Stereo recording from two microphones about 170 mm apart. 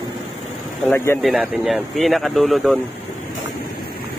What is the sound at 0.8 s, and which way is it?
Speech, 15° left (ahead or behind).